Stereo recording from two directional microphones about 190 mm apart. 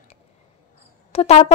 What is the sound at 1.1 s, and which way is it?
Speech, 35° left (ahead or behind).